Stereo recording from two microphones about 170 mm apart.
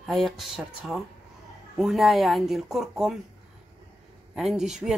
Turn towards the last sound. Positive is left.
turn(degrees=-5)  # may be behind; listen again after turning